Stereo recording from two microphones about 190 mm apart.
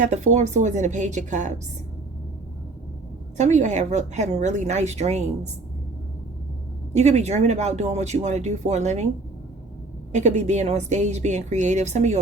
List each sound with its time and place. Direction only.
0.0 s speech: 40° right (ahead or behind)
3.3 s speech: 35° right (ahead or behind)
6.9 s speech: 35° right (ahead or behind)
10.1 s speech: 35° right (ahead or behind)